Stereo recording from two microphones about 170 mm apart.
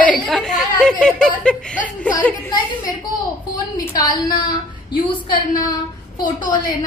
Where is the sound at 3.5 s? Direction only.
25° left (ahead or behind).